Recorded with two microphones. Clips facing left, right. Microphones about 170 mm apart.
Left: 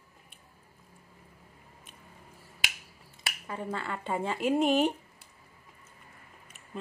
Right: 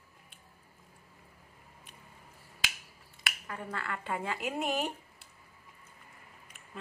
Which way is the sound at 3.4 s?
25° left (ahead or behind).